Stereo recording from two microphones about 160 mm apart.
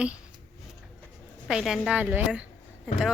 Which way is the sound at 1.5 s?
5° right (ahead or behind).